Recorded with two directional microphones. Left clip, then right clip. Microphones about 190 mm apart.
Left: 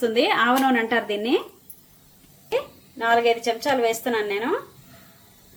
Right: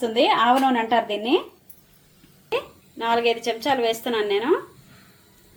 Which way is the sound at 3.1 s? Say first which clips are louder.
Left 2 dB; centre (ahead or behind).